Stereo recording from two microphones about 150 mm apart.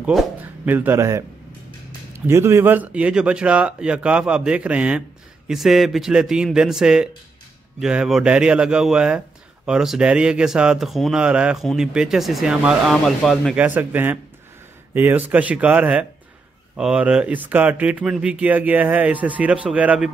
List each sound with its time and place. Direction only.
0.0 s speech: centre (ahead or behind)
0.7 s speech: 15° right (ahead or behind); by 13.6 s centre (ahead or behind)
13.6 s speech: 10° right (ahead or behind)